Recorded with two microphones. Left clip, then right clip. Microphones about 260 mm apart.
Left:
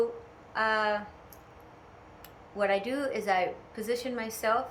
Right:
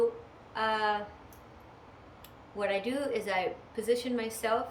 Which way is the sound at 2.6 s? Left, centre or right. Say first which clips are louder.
Left 3 dB; centre.